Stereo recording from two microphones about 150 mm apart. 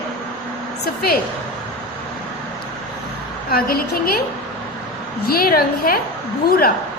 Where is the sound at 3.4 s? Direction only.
85° left.